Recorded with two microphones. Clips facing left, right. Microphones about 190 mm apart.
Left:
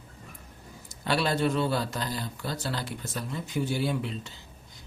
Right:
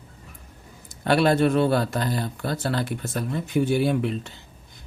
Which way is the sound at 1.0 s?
55° right (ahead or behind).